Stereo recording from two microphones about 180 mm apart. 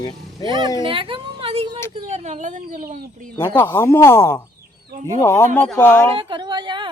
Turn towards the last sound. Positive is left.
turn(degrees=-25)  # may be behind; listen again after turning